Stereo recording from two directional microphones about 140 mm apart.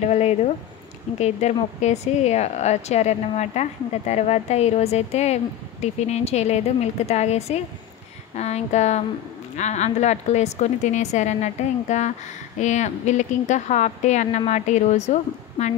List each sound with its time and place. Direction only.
0.1 s speech: 50° left (ahead or behind)